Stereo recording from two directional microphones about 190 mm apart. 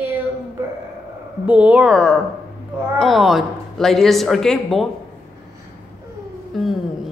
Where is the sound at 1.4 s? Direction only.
5° right (ahead or behind).